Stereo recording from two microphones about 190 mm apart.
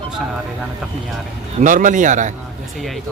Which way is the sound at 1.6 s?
40° right (ahead or behind).